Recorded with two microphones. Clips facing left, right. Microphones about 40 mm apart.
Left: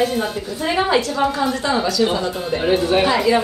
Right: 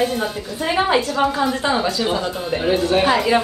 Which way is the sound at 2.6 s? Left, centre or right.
Centre.